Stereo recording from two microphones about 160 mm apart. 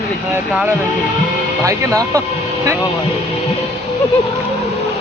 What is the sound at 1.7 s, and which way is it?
Speech, 20° right (ahead or behind).